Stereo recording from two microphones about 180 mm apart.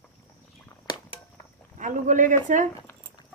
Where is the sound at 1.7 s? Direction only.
45° right (ahead or behind).